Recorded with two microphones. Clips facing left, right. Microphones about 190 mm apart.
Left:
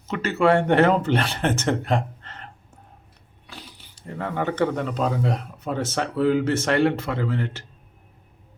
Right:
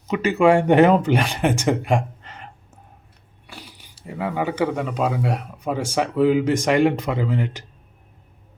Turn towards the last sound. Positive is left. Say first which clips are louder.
# right 2 dB
turn(degrees=-15)  # may be behind; listen again after turning